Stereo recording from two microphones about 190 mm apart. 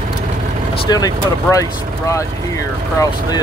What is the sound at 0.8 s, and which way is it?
Speech, 20° left (ahead or behind).